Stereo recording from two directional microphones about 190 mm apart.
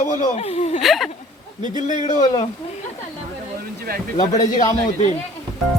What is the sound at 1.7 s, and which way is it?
Speech, 40° left (ahead or behind).